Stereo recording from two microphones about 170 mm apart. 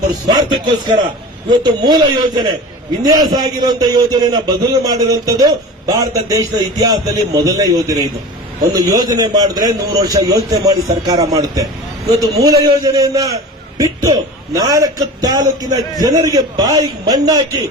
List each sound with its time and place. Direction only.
0.3 s a man's voice: 25° right (ahead or behind)